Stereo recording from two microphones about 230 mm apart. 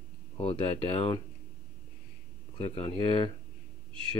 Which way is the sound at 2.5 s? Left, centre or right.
Left.